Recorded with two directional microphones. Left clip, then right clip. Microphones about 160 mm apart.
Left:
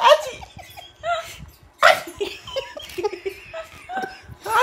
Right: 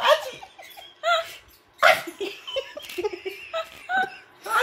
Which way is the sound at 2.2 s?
50° left (ahead or behind).